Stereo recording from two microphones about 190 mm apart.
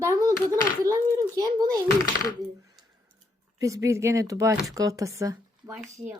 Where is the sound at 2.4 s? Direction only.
Centre (ahead or behind).